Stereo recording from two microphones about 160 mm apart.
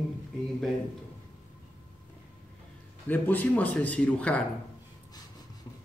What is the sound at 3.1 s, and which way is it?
A man's voice, 10° left (ahead or behind).